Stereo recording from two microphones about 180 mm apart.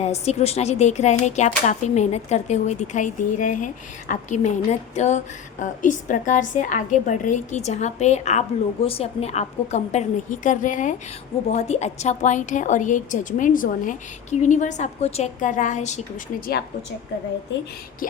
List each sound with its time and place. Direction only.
0.0 s a woman's voice: 35° left (ahead or behind)
18.0 s a woman's voice: 50° left (ahead or behind)